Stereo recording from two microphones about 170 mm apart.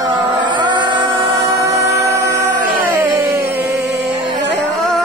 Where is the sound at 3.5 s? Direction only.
80° right.